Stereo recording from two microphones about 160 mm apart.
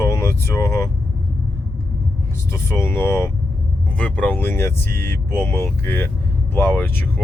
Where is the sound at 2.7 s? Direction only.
15° left (ahead or behind).